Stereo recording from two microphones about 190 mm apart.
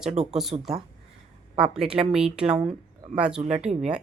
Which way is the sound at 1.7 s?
5° right (ahead or behind).